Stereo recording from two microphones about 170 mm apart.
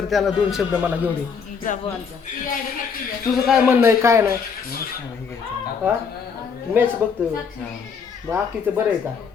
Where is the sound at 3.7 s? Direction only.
15° right (ahead or behind).